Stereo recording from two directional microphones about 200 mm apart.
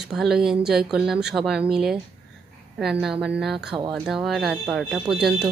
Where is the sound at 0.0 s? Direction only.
Centre (ahead or behind).